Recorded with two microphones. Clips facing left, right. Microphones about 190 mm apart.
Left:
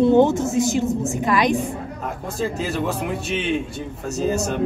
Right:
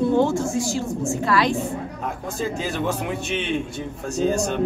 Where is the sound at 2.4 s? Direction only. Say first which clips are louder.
Left 2 dB; centre (ahead or behind).